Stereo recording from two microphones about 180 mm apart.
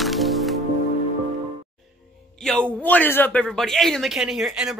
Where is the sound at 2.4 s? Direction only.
5° left (ahead or behind).